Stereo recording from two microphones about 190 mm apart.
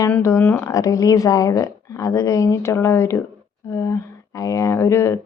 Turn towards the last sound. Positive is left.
turn(degrees=15)  # may be behind; listen again after turning